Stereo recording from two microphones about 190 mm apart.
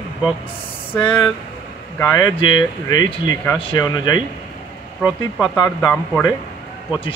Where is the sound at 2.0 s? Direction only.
20° left (ahead or behind).